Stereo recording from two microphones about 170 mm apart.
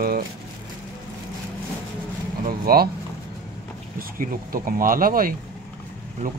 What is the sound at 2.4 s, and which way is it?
Speech, 60° right (ahead or behind).